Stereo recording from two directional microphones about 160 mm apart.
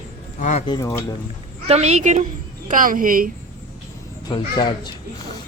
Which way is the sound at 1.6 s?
45° right (ahead or behind).